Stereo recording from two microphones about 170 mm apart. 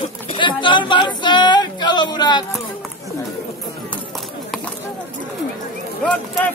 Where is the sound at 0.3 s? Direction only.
30° left (ahead or behind).